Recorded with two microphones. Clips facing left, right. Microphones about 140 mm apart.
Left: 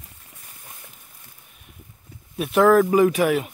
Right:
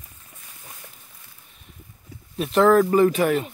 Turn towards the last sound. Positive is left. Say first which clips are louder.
# even
turn(degrees=10)  # may be behind; listen again after turning